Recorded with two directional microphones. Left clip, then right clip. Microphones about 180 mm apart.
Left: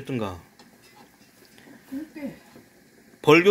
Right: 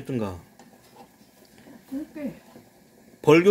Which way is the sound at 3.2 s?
15° right (ahead or behind).